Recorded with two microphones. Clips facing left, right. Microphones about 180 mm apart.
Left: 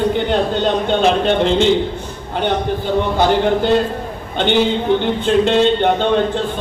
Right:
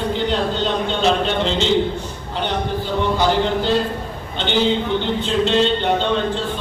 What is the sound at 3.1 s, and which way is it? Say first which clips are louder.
A man's voice: left 4 dB; 55° left (ahead or behind).